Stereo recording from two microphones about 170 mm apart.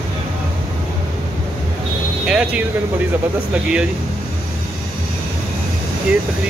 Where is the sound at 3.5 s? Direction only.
5° right (ahead or behind).